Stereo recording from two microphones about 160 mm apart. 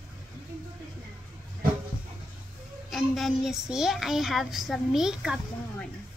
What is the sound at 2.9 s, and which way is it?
A woman's voice, centre (ahead or behind).